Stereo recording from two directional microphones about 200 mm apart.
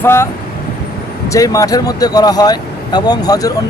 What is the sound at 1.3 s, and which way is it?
Speech, 15° left (ahead or behind).